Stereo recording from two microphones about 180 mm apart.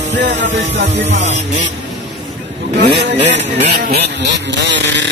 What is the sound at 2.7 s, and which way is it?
Speech, 70° right (ahead or behind).